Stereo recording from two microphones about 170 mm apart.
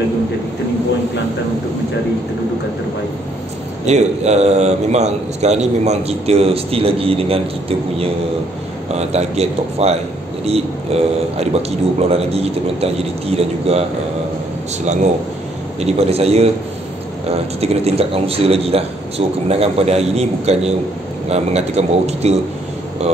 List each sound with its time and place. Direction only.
3.8 s a man's voice: 40° right (ahead or behind)
8.9 s a man's voice: 40° right (ahead or behind)
15.8 s a man's voice: 40° right (ahead or behind)
17.6 s a man's voice: 35° right (ahead or behind)